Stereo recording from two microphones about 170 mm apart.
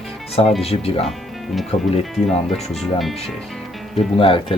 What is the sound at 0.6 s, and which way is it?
Speech, 35° left (ahead or behind).